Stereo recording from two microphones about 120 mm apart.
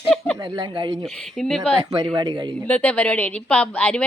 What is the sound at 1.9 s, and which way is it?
Speech, 35° right (ahead or behind).